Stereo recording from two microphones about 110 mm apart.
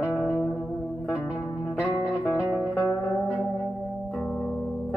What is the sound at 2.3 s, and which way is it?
Music, 5° right (ahead or behind).